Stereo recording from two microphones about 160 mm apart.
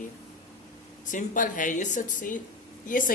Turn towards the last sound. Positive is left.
turn(degrees=55)  # may be behind; listen again after turning